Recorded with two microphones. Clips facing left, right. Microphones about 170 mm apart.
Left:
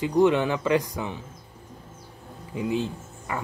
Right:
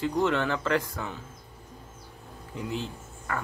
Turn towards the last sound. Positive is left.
turn(degrees=15)  # may be behind; listen again after turning